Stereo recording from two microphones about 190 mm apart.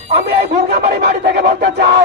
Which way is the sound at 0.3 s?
55° right (ahead or behind).